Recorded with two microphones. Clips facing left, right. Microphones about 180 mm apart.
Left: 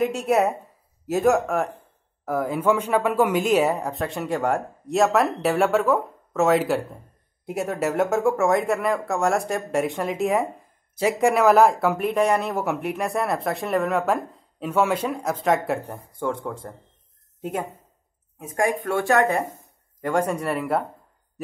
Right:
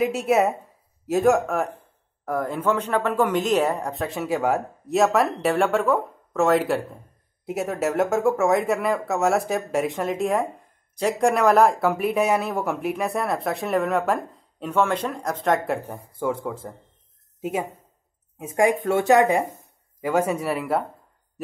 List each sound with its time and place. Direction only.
0.0 s speech: centre (ahead or behind)
18.4 s speech: 20° right (ahead or behind); by 20.8 s centre (ahead or behind)